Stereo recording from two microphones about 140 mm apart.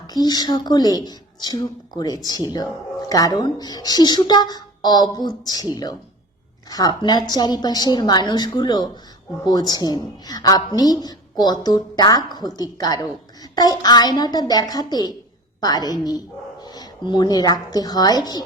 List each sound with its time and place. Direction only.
0.1 s a woman's voice: 30° left (ahead or behind)